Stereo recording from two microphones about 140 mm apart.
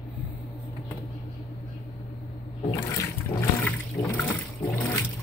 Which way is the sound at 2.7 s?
25° left (ahead or behind).